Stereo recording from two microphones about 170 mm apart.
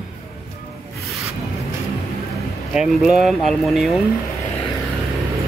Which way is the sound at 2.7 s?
5° right (ahead or behind).